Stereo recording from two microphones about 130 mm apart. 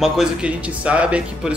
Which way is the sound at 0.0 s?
5° right (ahead or behind).